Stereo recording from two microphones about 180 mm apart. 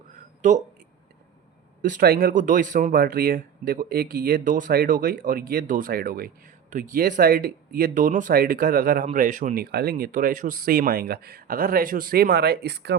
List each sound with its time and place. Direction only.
0.4 s speech: 40° right (ahead or behind)
1.8 s speech: 50° right (ahead or behind); by 13.0 s 70° right (ahead or behind)